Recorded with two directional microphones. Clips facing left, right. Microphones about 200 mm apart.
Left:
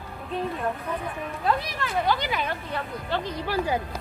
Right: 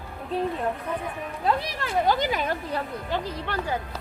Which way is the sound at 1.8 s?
40° right (ahead or behind).